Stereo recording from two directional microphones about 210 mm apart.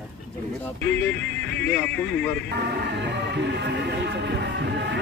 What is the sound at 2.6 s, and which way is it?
Music, 55° right (ahead or behind).